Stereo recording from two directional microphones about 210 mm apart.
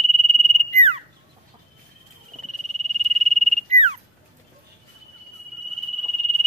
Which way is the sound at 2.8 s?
30° right (ahead or behind).